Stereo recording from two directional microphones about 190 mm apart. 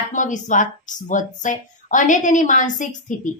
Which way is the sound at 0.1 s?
40° left (ahead or behind).